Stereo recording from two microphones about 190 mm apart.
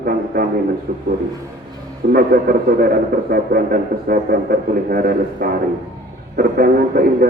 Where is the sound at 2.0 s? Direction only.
50° right (ahead or behind).